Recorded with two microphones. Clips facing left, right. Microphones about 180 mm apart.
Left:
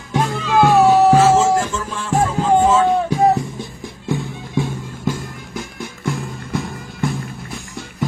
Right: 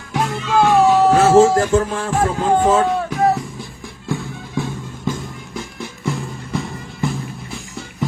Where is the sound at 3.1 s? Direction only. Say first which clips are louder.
Left 2 dB; 25° left (ahead or behind).